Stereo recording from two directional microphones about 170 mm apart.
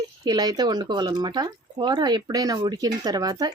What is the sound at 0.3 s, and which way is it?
Speech, 25° right (ahead or behind).